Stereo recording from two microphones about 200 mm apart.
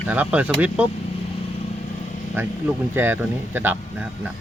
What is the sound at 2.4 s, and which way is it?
Speech, 10° right (ahead or behind).